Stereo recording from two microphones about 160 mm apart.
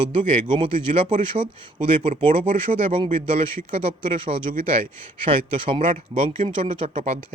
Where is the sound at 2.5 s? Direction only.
35° right (ahead or behind).